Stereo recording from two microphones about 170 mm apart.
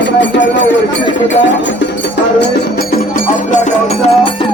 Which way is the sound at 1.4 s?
90° left.